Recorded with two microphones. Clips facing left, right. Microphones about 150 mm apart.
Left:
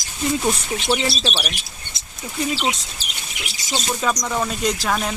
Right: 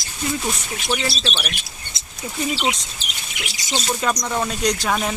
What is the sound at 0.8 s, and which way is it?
Speech, 20° left (ahead or behind).